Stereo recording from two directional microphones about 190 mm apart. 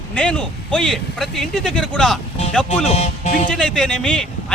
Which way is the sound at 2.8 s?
35° left (ahead or behind).